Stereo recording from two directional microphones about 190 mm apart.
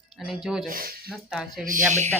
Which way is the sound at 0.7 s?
50° right (ahead or behind).